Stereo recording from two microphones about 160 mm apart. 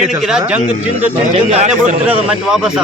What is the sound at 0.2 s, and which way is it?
A woman's voice, 5° right (ahead or behind).